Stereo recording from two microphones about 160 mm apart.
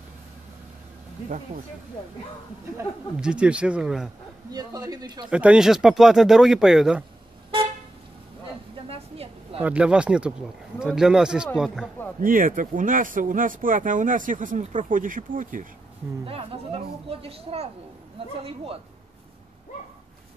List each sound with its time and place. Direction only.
3.2 s speech: 5° right (ahead or behind)
4.5 s a man's voice: 25° right (ahead or behind)
5.3 s speech: 5° right (ahead or behind)
8.8 s a sound: 40° right (ahead or behind)
9.6 s speech: 10° right (ahead or behind)
12.2 s speech: 60° right (ahead or behind)
16.3 s speech: 35° right (ahead or behind)